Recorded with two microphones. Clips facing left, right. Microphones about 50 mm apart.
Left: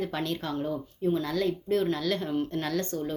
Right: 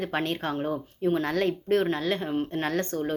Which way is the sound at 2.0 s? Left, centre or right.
Right.